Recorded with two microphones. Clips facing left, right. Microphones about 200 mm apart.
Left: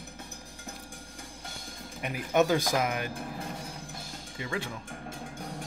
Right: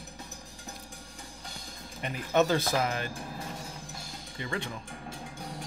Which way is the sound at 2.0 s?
10° left (ahead or behind).